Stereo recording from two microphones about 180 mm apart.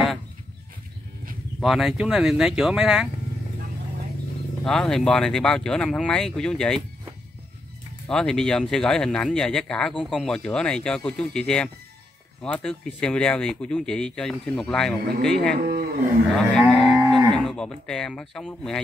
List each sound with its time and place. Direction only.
1.6 s speech: centre (ahead or behind)
4.6 s speech: centre (ahead or behind)
8.1 s speech: 5° left (ahead or behind)
15.5 s speech: 55° right (ahead or behind)
16.3 s livestock: 5° left (ahead or behind)